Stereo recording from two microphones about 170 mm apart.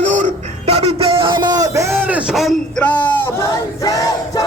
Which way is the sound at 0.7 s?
40° right (ahead or behind).